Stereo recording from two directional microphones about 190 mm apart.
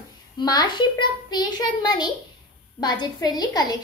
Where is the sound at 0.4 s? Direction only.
20° left (ahead or behind).